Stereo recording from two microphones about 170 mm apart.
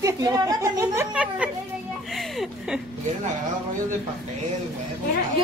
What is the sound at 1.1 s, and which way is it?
Speech, 5° right (ahead or behind).